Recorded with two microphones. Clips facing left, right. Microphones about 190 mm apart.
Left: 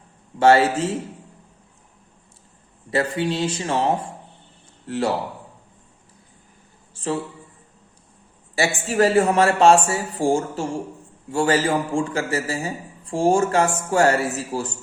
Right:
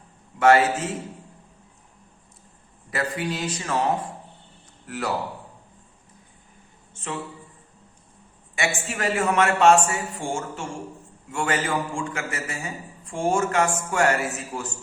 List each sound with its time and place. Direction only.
0.3 s speech: 30° left (ahead or behind)
2.9 s speech: 30° left (ahead or behind)
6.9 s a sound: 35° left (ahead or behind)
8.5 s a man's voice: 35° left (ahead or behind)